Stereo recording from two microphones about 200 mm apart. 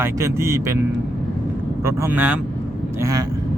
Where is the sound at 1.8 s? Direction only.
10° right (ahead or behind).